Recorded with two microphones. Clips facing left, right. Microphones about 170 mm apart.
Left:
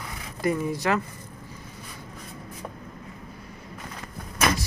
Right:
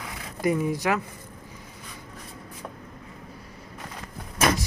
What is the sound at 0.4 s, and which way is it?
Speech, 15° right (ahead or behind).